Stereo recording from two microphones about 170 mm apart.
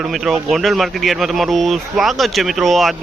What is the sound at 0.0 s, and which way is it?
Speech, centre (ahead or behind).